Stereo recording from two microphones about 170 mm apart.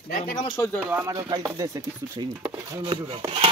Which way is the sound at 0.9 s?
15° right (ahead or behind).